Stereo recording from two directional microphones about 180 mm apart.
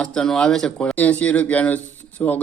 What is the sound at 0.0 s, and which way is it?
Speech, 5° left (ahead or behind).